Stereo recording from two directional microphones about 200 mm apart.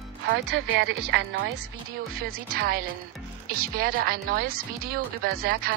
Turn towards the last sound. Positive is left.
turn(degrees=-45)  # may be behind; listen again after turning